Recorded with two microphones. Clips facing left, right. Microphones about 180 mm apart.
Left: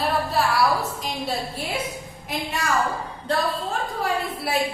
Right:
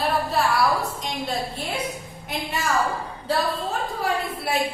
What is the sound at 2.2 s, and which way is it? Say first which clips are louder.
Speech: even; centre (ahead or behind).